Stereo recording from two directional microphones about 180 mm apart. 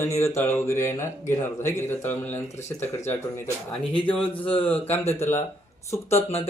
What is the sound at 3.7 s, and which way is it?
Speech, 30° left (ahead or behind).